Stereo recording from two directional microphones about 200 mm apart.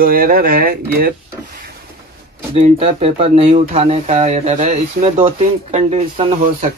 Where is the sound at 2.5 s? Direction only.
30° right (ahead or behind).